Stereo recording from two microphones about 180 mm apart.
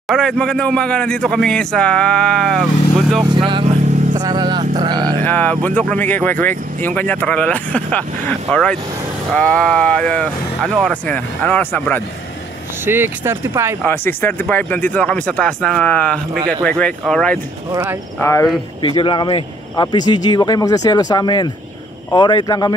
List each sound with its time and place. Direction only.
0.1 s speech: 5° left (ahead or behind)
3.3 s speech: 30° right (ahead or behind)
5.2 s speech: 10° left (ahead or behind)
12.8 s speech: 10° right (ahead or behind)
13.8 s speech: 10° left (ahead or behind)
18.2 s speech: 15° left (ahead or behind)
18.8 s a man's voice: 25° left (ahead or behind)